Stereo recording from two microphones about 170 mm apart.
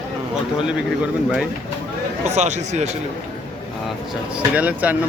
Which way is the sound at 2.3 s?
45° right (ahead or behind).